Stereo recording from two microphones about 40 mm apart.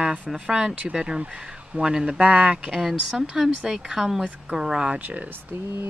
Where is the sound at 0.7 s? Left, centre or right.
Right.